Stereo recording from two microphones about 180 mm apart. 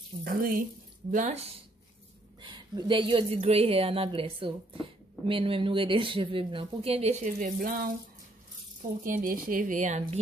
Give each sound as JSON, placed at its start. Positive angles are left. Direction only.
{"t": 0.2, "sound": "speech", "side_deg": -50}
{"t": 1.1, "sound": "speech", "side_deg": -35}
{"t": 2.4, "sound": "speech", "side_deg": -25}
{"t": 7.5, "sound": "speech", "side_deg": -55}
{"t": 9.0, "sound": "speech", "side_deg": -50}